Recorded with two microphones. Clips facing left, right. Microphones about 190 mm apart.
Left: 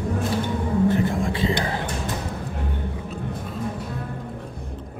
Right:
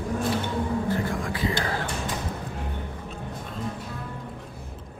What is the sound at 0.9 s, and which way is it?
Whispering, 25° left (ahead or behind).